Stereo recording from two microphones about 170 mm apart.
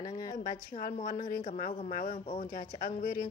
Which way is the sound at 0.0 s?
25° left (ahead or behind).